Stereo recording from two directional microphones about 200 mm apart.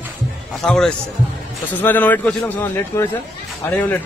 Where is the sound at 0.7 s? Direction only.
5° left (ahead or behind).